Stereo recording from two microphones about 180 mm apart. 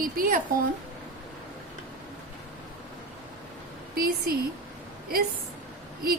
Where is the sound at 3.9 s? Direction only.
55° right (ahead or behind).